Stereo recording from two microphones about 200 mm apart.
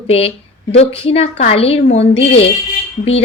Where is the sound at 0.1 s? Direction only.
30° left (ahead or behind).